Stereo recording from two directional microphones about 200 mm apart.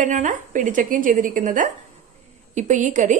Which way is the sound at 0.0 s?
40° right (ahead or behind).